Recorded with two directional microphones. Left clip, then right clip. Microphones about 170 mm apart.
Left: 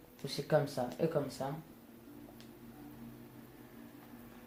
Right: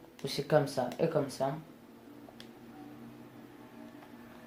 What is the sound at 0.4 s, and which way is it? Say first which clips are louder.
Speech: right 4 dB; 35° right (ahead or behind).